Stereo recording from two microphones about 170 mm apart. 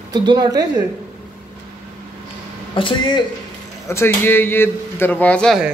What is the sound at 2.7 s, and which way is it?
Speech, 30° left (ahead or behind).